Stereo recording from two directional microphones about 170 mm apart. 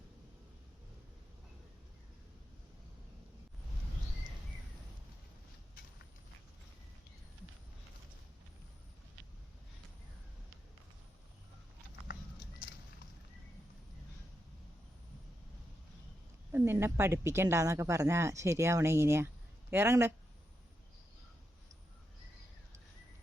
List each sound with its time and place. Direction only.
16.5 s a woman's voice: 15° right (ahead or behind)